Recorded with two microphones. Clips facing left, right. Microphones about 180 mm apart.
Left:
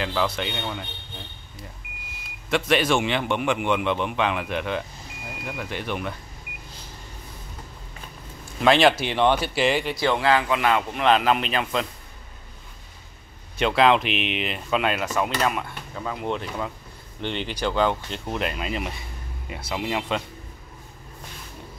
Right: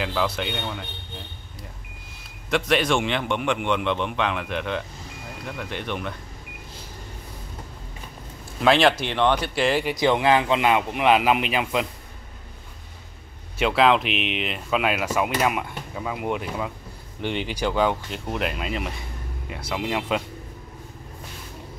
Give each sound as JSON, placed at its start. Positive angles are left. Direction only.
{"t": 0.0, "sound": "speech", "side_deg": 0}
{"t": 2.5, "sound": "speech", "side_deg": 0}
{"t": 8.5, "sound": "speech", "side_deg": 0}
{"t": 9.9, "sound": "a man's voice", "side_deg": -20}
{"t": 13.6, "sound": "a man's voice", "side_deg": 0}